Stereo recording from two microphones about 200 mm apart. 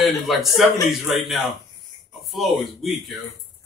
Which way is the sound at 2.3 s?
Centre (ahead or behind).